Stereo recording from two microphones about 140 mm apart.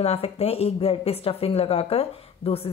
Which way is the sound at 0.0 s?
45° left (ahead or behind).